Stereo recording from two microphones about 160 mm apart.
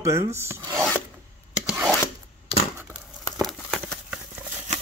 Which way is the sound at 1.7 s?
5° right (ahead or behind).